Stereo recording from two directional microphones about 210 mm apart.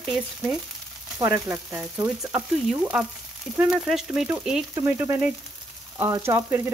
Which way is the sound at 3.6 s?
Centre (ahead or behind).